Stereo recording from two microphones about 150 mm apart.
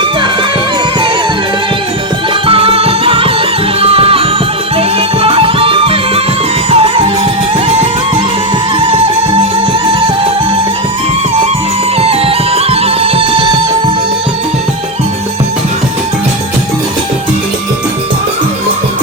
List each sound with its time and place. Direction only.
2.5 s music: 40° right (ahead or behind)
11.9 s music: 40° right (ahead or behind)